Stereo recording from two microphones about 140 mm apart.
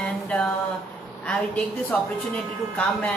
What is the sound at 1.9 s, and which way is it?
A woman's voice, 10° left (ahead or behind).